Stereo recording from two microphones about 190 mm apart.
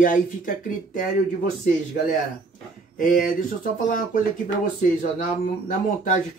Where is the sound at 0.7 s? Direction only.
45° left (ahead or behind).